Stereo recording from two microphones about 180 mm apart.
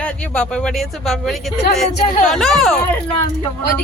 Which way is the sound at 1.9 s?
40° left (ahead or behind).